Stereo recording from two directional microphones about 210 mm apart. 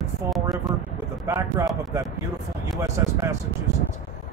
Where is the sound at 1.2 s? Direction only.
15° right (ahead or behind).